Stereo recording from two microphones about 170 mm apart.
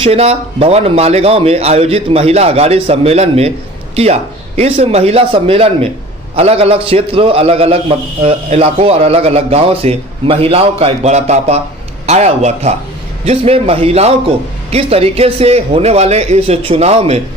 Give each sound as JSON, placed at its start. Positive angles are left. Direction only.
{"t": 0.0, "sound": "a man's voice", "side_deg": -35}